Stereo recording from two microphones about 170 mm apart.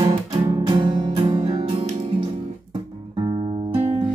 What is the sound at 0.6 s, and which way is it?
Music, 25° right (ahead or behind).